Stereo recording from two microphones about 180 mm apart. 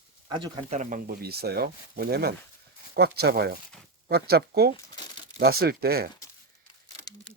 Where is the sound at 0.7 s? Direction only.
45° right (ahead or behind).